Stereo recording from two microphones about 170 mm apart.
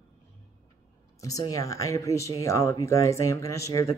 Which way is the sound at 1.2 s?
20° left (ahead or behind).